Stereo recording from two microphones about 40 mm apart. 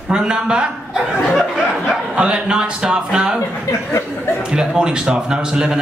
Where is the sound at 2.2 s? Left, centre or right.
Right.